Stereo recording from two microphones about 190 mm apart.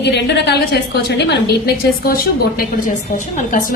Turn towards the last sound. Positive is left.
turn(degrees=40)  # may be behind; listen again after turning